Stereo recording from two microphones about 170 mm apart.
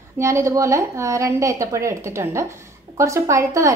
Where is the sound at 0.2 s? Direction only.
15° right (ahead or behind).